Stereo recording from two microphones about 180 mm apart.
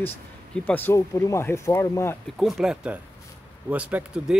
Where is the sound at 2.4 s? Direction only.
Centre (ahead or behind).